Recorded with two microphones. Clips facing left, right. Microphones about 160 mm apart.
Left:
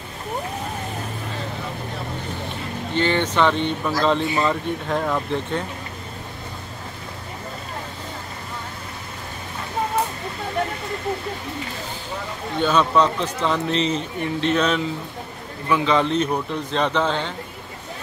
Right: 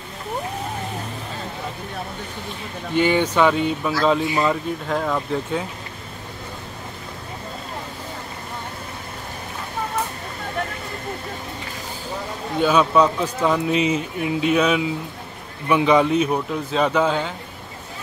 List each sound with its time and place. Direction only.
2.9 s a man's voice: 10° right (ahead or behind)
12.5 s a man's voice: 10° right (ahead or behind)